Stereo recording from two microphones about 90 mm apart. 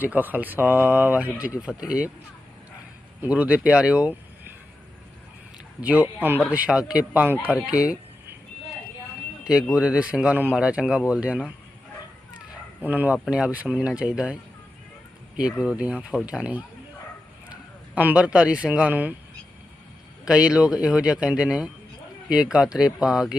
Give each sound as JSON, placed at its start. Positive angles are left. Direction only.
{"t": 0.0, "sound": "speech", "side_deg": -20}
{"t": 3.2, "sound": "speech", "side_deg": -15}
{"t": 5.8, "sound": "speech", "side_deg": -15}
{"t": 9.4, "sound": "speech", "side_deg": -5}
{"t": 12.8, "sound": "speech", "side_deg": -15}
{"t": 15.4, "sound": "a man's voice", "side_deg": -10}
{"t": 20.2, "sound": "speech", "side_deg": -10}